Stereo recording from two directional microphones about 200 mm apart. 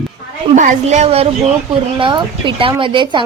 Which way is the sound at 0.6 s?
35° right (ahead or behind).